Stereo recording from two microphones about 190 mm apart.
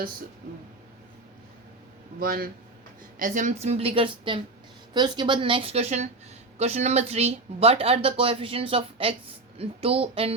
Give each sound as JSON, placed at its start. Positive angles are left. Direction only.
{"t": 2.1, "sound": "a woman's voice", "side_deg": -50}